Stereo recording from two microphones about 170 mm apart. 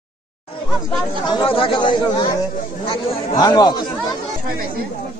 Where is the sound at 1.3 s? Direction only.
30° left (ahead or behind).